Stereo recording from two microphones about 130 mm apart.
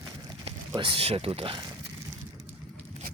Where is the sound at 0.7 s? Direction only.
45° right (ahead or behind).